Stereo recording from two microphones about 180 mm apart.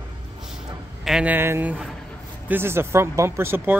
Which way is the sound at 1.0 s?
5° right (ahead or behind).